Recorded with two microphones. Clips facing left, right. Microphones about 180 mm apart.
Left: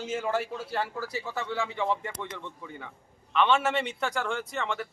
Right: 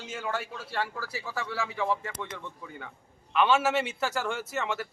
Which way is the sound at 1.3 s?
20° left (ahead or behind).